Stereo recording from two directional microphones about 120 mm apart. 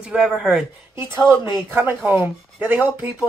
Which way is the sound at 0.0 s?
5° right (ahead or behind).